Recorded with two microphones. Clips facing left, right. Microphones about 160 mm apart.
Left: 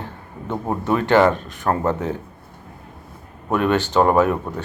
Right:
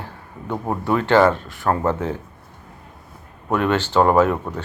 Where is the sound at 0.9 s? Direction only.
20° left (ahead or behind).